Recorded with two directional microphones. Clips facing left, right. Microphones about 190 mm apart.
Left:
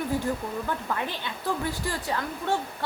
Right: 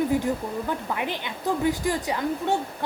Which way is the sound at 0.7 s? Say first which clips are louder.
Right 2 dB; 15° right (ahead or behind).